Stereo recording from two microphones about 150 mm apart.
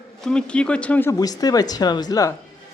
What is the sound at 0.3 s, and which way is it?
Speech, 5° left (ahead or behind).